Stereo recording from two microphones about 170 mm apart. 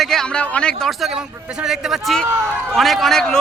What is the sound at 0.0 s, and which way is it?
A man's voice, 5° left (ahead or behind).